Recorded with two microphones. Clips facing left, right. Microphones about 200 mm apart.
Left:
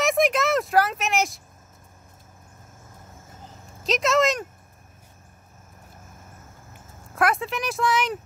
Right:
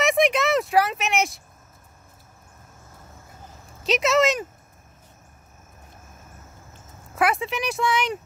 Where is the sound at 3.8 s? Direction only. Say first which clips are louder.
Right 1 dB; centre (ahead or behind).